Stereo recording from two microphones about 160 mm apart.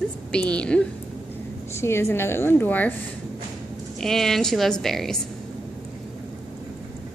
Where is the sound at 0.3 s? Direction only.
5° left (ahead or behind).